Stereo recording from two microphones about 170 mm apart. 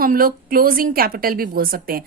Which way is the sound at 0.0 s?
60° right (ahead or behind).